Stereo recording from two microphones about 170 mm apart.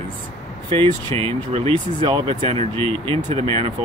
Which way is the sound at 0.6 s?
30° right (ahead or behind).